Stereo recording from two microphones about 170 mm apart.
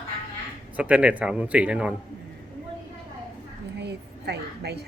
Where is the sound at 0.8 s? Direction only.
10° right (ahead or behind).